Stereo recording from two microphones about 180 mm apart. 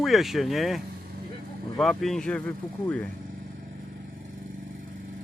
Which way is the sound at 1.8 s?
Centre (ahead or behind).